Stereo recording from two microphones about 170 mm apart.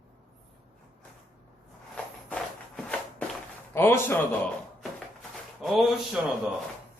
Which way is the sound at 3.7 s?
15° left (ahead or behind).